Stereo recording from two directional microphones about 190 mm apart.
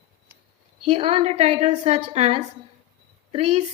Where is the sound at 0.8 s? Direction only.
30° right (ahead or behind).